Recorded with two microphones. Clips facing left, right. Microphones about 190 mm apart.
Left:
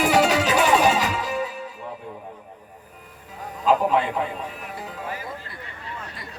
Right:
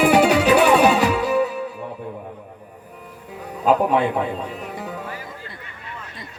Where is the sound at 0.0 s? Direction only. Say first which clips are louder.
Right 4 dB; 55° right (ahead or behind).